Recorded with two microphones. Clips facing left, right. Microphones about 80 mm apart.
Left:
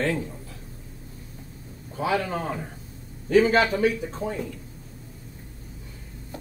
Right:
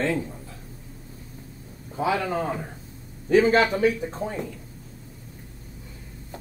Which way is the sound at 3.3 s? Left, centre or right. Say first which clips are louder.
Right 1 dB; right.